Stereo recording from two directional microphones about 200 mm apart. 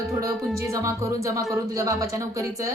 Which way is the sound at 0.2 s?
15° right (ahead or behind).